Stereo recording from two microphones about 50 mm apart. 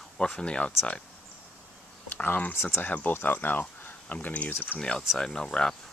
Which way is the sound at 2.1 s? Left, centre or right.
Left.